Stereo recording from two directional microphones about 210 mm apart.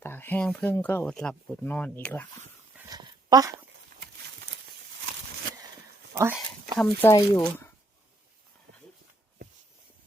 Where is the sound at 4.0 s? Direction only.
60° right (ahead or behind).